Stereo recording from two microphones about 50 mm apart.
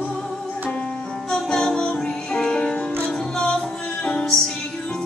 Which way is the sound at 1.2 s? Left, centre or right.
Centre.